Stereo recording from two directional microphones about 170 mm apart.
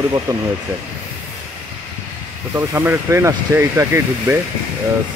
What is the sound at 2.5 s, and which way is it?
Speech, 15° right (ahead or behind).